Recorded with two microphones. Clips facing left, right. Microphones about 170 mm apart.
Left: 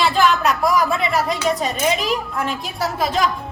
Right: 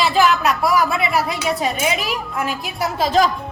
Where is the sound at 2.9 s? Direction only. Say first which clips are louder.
Right 4 dB; 35° right (ahead or behind).